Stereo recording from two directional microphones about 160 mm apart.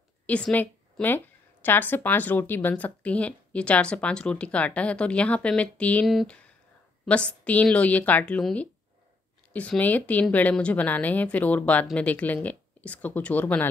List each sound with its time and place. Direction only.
0.3 s a woman's voice: 5° left (ahead or behind)